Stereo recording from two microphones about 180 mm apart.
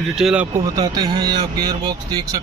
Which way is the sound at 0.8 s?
25° right (ahead or behind).